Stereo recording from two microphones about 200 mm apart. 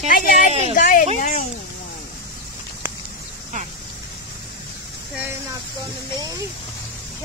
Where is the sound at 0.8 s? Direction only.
40° left (ahead or behind).